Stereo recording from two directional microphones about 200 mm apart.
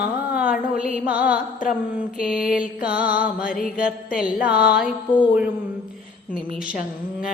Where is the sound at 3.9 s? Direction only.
5° right (ahead or behind).